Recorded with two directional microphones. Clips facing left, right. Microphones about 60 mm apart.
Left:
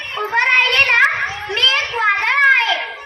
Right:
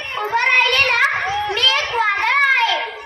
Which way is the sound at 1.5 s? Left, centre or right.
Left.